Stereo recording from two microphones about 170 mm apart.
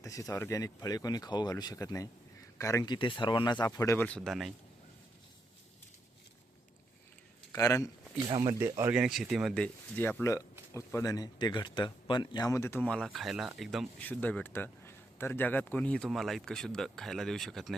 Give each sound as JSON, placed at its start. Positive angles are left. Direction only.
{"t": 0.0, "sound": "speech", "side_deg": 20}
{"t": 7.5, "sound": "speech", "side_deg": 15}
{"t": 8.3, "sound": "speech", "side_deg": -20}
{"t": 9.0, "sound": "speech", "side_deg": 0}
{"t": 14.0, "sound": "speech", "side_deg": 10}